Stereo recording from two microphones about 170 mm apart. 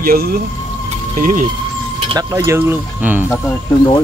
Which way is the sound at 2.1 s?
20° right (ahead or behind).